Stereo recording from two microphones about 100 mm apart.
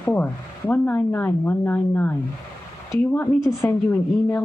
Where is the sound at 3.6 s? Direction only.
20° left (ahead or behind).